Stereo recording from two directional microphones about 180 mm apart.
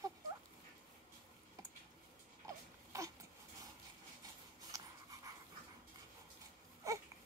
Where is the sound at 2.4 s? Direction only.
20° right (ahead or behind).